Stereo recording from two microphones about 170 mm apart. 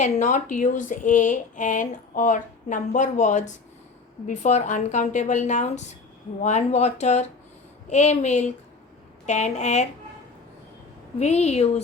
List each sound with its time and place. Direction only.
0.0 s speech: 45° left (ahead or behind)
11.2 s speech: 40° left (ahead or behind)